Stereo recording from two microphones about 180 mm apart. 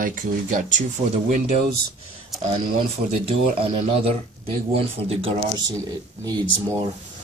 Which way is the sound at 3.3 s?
30° right (ahead or behind).